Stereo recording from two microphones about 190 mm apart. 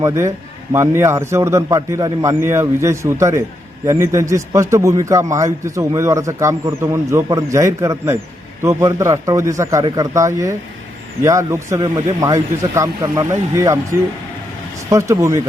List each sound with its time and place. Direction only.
0.0 s a man's voice: 15° right (ahead or behind)
14.8 s a man's voice: 15° right (ahead or behind)